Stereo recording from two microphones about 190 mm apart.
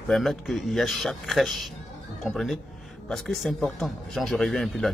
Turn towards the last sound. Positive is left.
turn(degrees=0)  # may be behind; listen again after turning